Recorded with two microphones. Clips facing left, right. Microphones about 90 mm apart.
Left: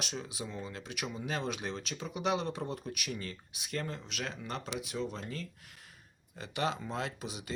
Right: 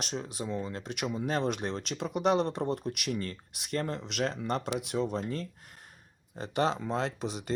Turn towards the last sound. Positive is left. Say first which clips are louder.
# right 6 dB
turn(degrees=-50)  # may be behind; listen again after turning